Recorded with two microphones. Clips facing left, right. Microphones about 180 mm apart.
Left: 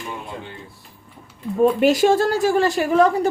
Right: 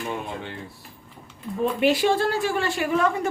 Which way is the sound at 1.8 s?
45° left (ahead or behind).